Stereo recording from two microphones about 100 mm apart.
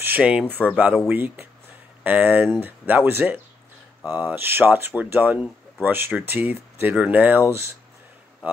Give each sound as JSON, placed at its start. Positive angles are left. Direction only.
{"t": 0.0, "sound": "speech", "side_deg": -15}